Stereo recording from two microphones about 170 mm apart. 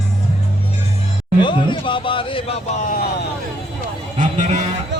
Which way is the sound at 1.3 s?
30° left (ahead or behind).